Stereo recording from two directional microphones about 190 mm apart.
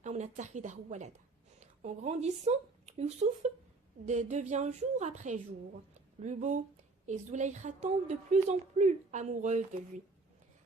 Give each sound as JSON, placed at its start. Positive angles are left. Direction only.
{"t": 0.0, "sound": "a woman's voice", "side_deg": -40}